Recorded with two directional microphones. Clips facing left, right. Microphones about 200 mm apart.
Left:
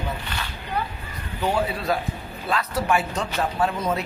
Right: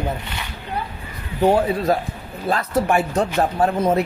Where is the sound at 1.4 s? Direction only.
45° right (ahead or behind).